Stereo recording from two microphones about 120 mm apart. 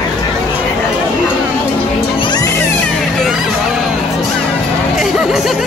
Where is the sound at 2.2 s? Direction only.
35° left (ahead or behind).